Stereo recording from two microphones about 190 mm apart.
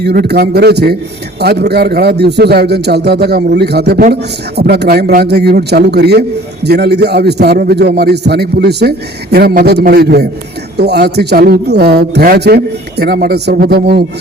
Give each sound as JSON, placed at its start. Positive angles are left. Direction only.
{"t": 0.0, "sound": "a man's voice", "side_deg": -60}